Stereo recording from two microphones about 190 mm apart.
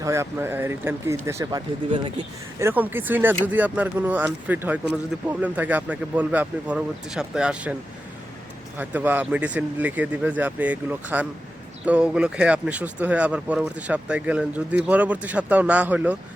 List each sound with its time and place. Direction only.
0.0 s speech: 15° right (ahead or behind)
8.8 s speech: 10° right (ahead or behind)